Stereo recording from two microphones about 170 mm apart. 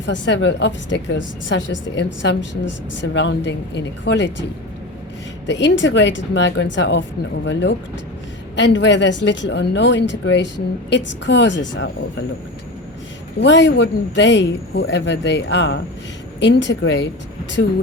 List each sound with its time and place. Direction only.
0.0 s speech: 90° left
5.5 s speech: 90° left
13.4 s speech: 90° left